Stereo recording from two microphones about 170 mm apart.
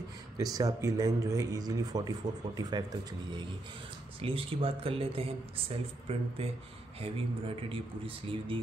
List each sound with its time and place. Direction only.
0.4 s speech: 20° right (ahead or behind)